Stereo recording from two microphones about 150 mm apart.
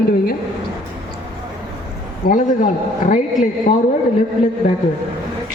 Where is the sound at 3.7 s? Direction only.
55° left (ahead or behind).